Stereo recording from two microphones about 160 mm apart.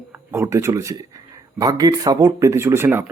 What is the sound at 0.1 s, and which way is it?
Speech, 15° right (ahead or behind).